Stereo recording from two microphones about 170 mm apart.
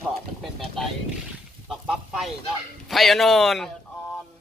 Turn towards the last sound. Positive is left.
turn(degrees=0)  # may be behind; listen again after turning